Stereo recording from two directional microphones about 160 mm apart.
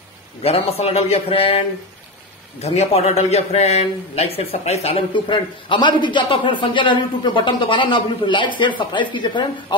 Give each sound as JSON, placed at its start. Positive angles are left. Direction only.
{"t": 0.4, "sound": "a man's voice", "side_deg": 40}
{"t": 2.6, "sound": "a man's voice", "side_deg": 45}